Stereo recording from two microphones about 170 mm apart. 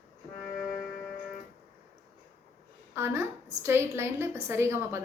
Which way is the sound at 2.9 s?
15° right (ahead or behind).